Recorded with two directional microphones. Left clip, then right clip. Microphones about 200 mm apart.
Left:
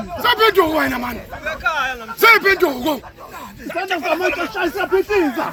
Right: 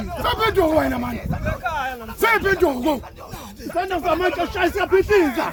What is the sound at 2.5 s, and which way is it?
Speech, 35° right (ahead or behind).